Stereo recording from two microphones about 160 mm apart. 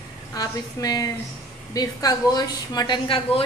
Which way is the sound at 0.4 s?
25° left (ahead or behind).